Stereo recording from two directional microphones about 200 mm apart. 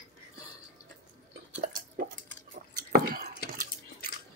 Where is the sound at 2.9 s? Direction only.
45° right (ahead or behind).